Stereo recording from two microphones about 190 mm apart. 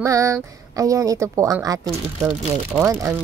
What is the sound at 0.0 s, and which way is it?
Speech, 15° right (ahead or behind).